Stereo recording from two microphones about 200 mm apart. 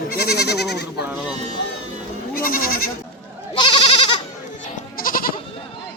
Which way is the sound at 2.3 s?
45° left (ahead or behind).